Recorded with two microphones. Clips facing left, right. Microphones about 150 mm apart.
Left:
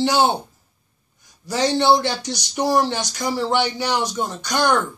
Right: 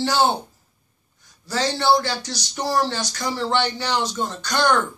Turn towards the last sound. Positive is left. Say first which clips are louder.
# left 1 dB
turn(degrees=10)  # may be behind; listen again after turning